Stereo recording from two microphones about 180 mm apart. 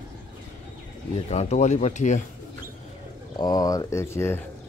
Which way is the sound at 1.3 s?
40° left (ahead or behind).